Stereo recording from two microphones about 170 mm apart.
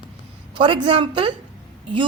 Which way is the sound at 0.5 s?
30° right (ahead or behind).